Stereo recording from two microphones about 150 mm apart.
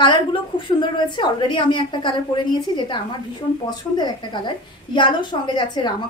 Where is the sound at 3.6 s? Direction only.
30° left (ahead or behind).